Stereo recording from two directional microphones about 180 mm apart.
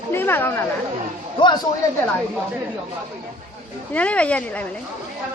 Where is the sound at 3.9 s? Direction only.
5° left (ahead or behind).